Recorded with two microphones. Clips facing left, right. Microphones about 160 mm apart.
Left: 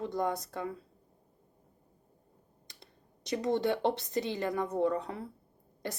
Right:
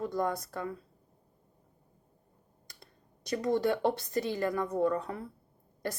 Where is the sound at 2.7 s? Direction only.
20° left (ahead or behind).